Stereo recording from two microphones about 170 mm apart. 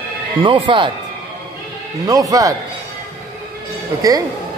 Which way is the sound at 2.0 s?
20° right (ahead or behind).